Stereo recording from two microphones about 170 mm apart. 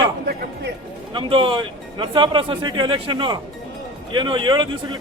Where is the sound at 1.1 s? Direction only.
30° right (ahead or behind).